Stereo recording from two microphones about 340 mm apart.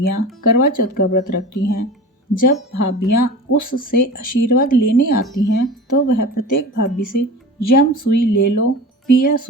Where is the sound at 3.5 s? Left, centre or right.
Left.